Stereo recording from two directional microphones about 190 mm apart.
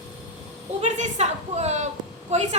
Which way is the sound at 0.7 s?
40° right (ahead or behind).